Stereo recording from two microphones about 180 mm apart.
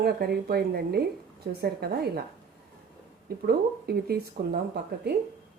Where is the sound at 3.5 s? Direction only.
60° right (ahead or behind).